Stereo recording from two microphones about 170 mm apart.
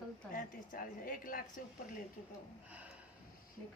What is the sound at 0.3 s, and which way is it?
A woman's voice, 55° left (ahead or behind).